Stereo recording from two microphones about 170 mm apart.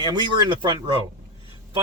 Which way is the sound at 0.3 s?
25° right (ahead or behind).